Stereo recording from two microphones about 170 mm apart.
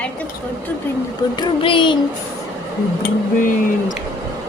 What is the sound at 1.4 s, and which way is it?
Speech, 30° left (ahead or behind).